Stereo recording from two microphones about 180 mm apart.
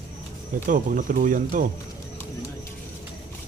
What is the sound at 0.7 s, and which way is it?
Speech, 45° right (ahead or behind).